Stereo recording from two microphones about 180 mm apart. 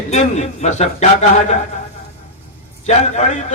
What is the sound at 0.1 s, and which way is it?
Speech, 40° left (ahead or behind).